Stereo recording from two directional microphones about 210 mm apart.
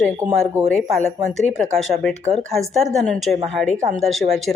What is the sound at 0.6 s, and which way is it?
Speech, 15° right (ahead or behind).